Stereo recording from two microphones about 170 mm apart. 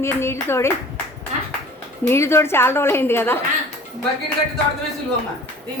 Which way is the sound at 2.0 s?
15° left (ahead or behind).